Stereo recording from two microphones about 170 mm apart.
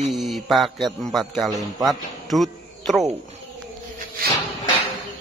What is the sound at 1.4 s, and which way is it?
Speech, 20° right (ahead or behind).